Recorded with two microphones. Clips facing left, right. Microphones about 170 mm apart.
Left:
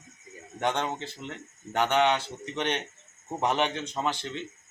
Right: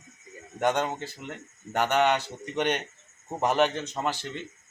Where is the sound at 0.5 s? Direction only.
10° right (ahead or behind).